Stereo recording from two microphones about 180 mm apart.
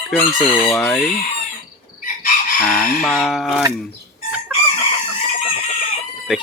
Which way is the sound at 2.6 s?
5° left (ahead or behind).